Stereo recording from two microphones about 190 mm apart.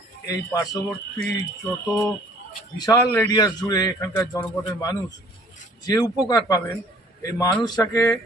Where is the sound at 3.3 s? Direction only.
20° left (ahead or behind).